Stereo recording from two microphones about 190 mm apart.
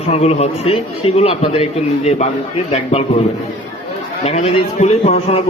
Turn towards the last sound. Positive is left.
turn(degrees=35)  # may be behind; listen again after turning